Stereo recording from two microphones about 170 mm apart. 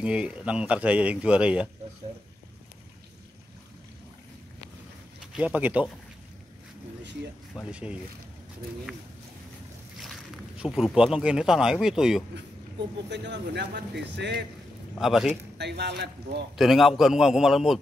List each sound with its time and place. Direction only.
0.0 s speech: 5° right (ahead or behind)
5.3 s speech: 10° right (ahead or behind)
7.5 s speech: 5° right (ahead or behind)
10.6 s speech: 5° right (ahead or behind)
13.1 s a man's voice: 90° right
15.0 s speech: centre (ahead or behind)
15.5 s speech: 80° right
16.5 s speech: centre (ahead or behind)